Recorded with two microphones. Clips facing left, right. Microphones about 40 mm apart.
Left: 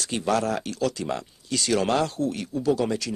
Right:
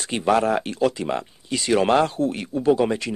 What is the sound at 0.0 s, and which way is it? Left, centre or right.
Speech, right.